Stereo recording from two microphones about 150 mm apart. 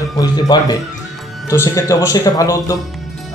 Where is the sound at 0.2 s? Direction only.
25° left (ahead or behind).